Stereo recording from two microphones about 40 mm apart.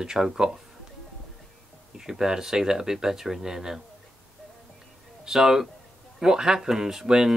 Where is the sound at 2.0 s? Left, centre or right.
Centre.